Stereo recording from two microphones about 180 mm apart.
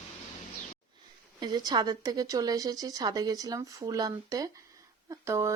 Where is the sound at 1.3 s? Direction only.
25° right (ahead or behind).